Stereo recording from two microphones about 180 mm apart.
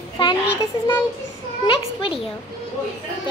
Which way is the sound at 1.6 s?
30° left (ahead or behind).